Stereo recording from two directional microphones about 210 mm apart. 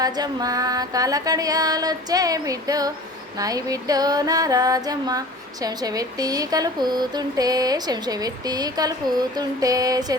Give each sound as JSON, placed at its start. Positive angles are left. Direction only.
{"t": 0.0, "sound": "speech", "side_deg": -20}